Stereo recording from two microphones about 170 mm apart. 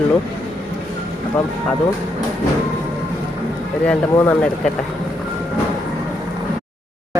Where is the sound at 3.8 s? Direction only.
5° left (ahead or behind).